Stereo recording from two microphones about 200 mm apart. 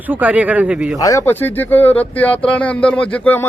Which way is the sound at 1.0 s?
15° left (ahead or behind).